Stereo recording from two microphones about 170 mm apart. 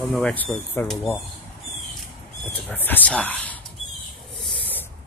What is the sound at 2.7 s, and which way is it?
Speech, 10° left (ahead or behind).